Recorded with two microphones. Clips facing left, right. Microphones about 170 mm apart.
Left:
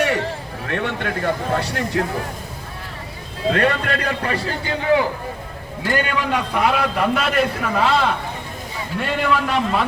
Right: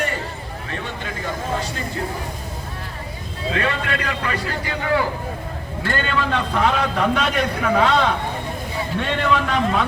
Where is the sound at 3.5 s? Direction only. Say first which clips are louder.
Left 3 dB; 50° left (ahead or behind); by 4.7 s 30° left (ahead or behind).